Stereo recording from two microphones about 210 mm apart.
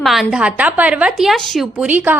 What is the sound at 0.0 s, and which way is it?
Speech, centre (ahead or behind).